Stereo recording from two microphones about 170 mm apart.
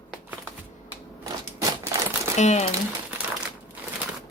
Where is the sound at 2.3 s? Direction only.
40° left (ahead or behind).